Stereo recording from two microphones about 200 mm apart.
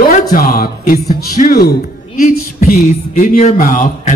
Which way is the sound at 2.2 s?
40° left (ahead or behind).